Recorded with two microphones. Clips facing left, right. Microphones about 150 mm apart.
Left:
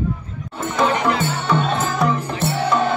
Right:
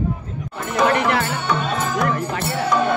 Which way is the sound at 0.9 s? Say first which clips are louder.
Right 2 dB; 65° right (ahead or behind).